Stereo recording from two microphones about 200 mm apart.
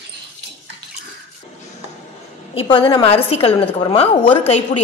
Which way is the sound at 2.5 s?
25° left (ahead or behind).